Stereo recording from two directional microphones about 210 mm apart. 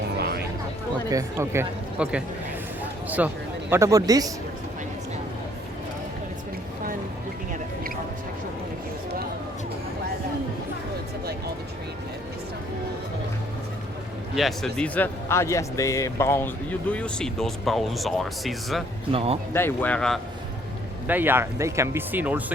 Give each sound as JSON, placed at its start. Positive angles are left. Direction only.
{"t": 1.1, "sound": "speech", "side_deg": -10}
{"t": 14.3, "sound": "speech", "side_deg": 0}
{"t": 19.1, "sound": "a man's voice", "side_deg": -25}
{"t": 19.5, "sound": "speech", "side_deg": 10}
{"t": 21.1, "sound": "speech", "side_deg": -10}